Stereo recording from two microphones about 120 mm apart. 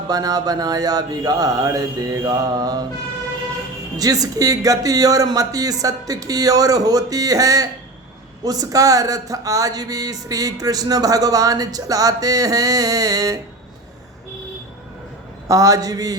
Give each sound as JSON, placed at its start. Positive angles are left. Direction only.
{"t": 0.1, "sound": "mantra", "side_deg": -30}
{"t": 3.9, "sound": "speech", "side_deg": -30}
{"t": 15.4, "sound": "speech", "side_deg": -30}